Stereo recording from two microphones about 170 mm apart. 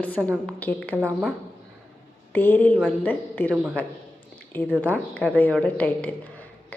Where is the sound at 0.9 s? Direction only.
10° right (ahead or behind).